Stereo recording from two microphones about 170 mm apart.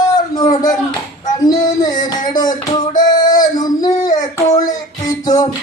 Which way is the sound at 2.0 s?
25° left (ahead or behind).